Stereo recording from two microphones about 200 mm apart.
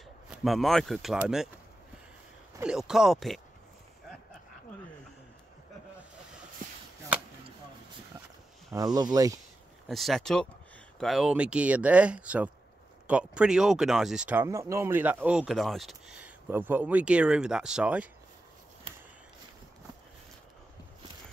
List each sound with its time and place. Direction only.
0.3 s speech: centre (ahead or behind)
2.6 s speech: 5° right (ahead or behind)
8.7 s speech: 20° right (ahead or behind)
9.8 s speech: centre (ahead or behind)